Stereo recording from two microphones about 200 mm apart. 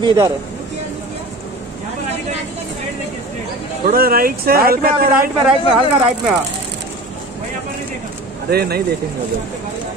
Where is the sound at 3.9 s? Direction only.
45° right (ahead or behind).